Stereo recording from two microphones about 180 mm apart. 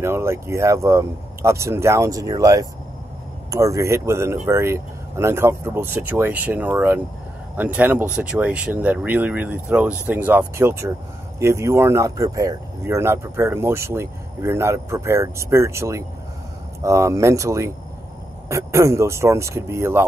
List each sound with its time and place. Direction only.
0.0 s speech: 15° right (ahead or behind)